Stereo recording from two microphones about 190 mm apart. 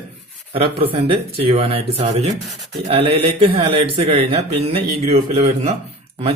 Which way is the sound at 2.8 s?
30° right (ahead or behind).